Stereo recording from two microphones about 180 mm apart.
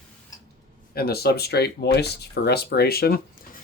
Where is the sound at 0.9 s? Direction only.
60° left (ahead or behind).